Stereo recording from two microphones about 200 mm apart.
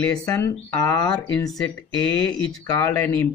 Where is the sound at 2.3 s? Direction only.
20° left (ahead or behind).